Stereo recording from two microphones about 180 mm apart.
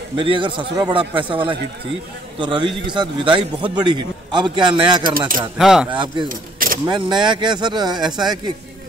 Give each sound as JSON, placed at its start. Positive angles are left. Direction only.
{"t": 0.2, "sound": "a man's voice", "side_deg": -25}
{"t": 5.6, "sound": "speech", "side_deg": 0}
{"t": 5.9, "sound": "a man's voice", "side_deg": -25}
{"t": 6.2, "sound": "keys jangling", "side_deg": -50}
{"t": 6.9, "sound": "a man's voice", "side_deg": -25}